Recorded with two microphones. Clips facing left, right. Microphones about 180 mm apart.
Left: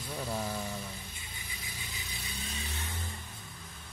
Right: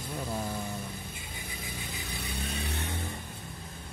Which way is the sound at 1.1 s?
55° right (ahead or behind).